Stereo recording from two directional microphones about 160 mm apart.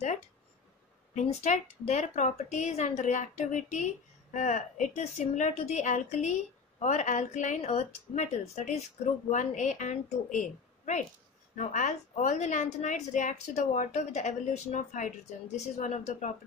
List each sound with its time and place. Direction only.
1.1 s a woman's voice: 45° left (ahead or behind)